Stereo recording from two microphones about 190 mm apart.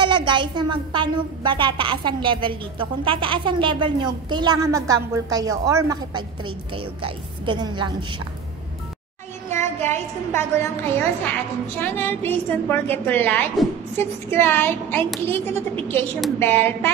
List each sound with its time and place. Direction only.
0.0 s a woman's voice: 25° right (ahead or behind)
9.5 s a woman's voice: 15° left (ahead or behind)
16.3 s a woman's voice: 10° left (ahead or behind)